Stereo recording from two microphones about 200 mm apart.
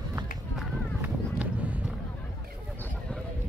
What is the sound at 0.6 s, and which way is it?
Run, 5° right (ahead or behind).